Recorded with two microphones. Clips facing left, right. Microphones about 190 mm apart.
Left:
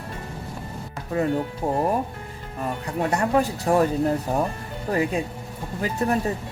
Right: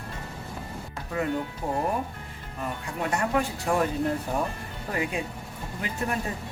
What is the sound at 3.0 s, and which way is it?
Speech, 35° left (ahead or behind).